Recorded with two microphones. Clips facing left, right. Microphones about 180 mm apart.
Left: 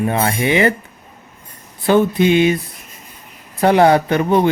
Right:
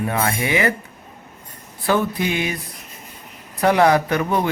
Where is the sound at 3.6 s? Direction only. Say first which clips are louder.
Left 4 dB; 30° left (ahead or behind).